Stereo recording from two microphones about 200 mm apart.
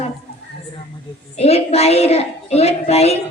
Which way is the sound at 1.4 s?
30° left (ahead or behind).